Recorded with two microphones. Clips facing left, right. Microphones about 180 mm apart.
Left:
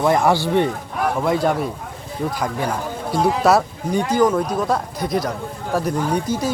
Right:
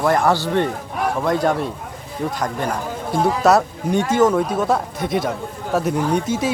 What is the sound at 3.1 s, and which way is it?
Speech, centre (ahead or behind).